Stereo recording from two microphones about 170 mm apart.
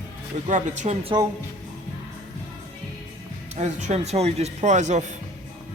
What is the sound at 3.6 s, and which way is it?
Speech, 45° right (ahead or behind).